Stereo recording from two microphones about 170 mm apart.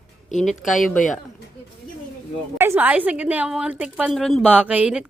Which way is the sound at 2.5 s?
15° right (ahead or behind).